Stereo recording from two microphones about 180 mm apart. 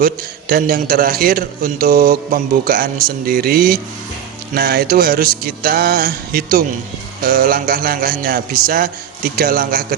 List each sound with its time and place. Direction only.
0.0 s a man's voice: 55° right (ahead or behind)
4.5 s music: 55° right (ahead or behind)
7.2 s a man's voice: 55° right (ahead or behind)
9.3 s music: 55° right (ahead or behind)